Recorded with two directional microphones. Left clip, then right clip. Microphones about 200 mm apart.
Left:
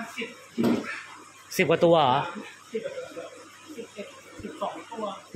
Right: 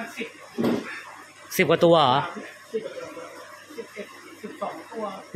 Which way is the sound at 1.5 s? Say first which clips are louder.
Right 2 dB; 10° right (ahead or behind).